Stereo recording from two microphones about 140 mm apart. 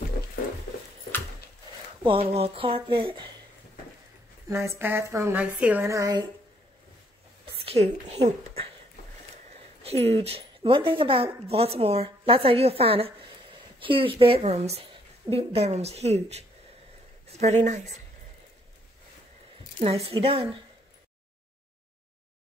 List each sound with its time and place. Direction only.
2.0 s speech: 45° right (ahead or behind)
4.5 s speech: 20° right (ahead or behind)
5.9 s speech: 25° right (ahead or behind)
7.5 s a woman's voice: 45° right (ahead or behind)
9.8 s a woman's voice: 45° right (ahead or behind)
19.8 s speech: 45° right (ahead or behind)